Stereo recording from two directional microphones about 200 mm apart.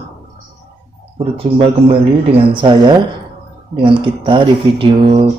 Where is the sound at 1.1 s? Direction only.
30° right (ahead or behind).